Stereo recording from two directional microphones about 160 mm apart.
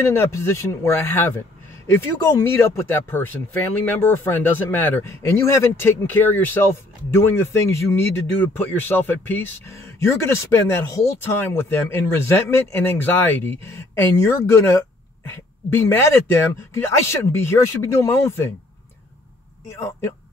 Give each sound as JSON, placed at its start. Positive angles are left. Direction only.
{"t": 0.0, "sound": "speech", "side_deg": 15}
{"t": 19.7, "sound": "speech", "side_deg": 15}